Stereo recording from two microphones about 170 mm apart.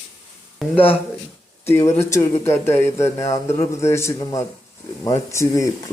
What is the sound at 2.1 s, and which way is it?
A man's voice, 15° left (ahead or behind).